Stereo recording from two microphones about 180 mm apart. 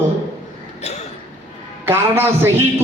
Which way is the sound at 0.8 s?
35° left (ahead or behind).